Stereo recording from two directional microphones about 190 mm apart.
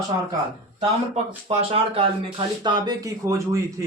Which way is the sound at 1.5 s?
30° right (ahead or behind).